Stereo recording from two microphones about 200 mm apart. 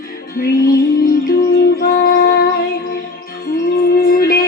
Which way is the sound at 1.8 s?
50° left (ahead or behind).